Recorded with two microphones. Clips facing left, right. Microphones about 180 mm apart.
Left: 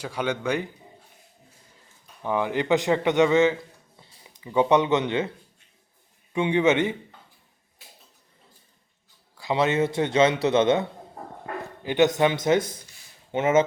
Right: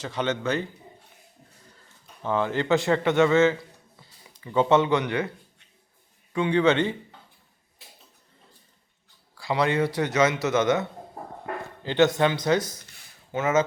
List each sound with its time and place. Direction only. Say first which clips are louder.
0.0 s speech: even; 10° left (ahead or behind)
2.2 s speech: even; 15° left (ahead or behind)
6.3 s speech: even; 20° left (ahead or behind)
9.4 s speech: left 1 dB; 20° left (ahead or behind)
11.8 s speech: left 1 dB; 15° left (ahead or behind)